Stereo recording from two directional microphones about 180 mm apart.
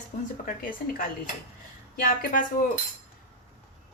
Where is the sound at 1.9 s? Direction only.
55° left (ahead or behind).